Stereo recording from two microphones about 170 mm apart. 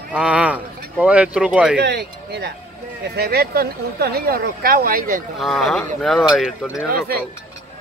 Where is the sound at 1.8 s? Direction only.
80° right.